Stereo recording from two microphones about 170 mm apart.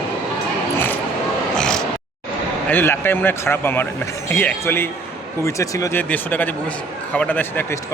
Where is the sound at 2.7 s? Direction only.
10° left (ahead or behind).